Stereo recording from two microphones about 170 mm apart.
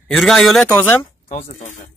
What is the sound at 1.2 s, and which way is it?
Speech, 45° left (ahead or behind).